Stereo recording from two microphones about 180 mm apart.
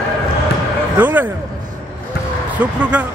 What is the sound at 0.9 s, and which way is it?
Speech, 10° right (ahead or behind).